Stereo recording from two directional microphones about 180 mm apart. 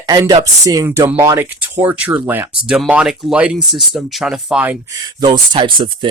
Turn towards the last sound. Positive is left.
turn(degrees=-30)  # may be behind; listen again after turning